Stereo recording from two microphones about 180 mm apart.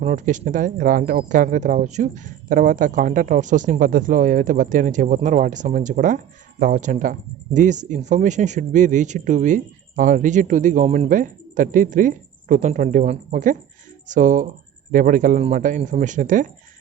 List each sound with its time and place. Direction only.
0.0 s speech: 45° right (ahead or behind)